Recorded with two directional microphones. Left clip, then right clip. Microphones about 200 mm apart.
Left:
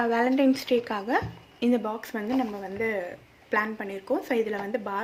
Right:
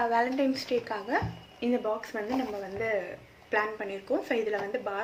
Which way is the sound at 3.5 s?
50° left (ahead or behind).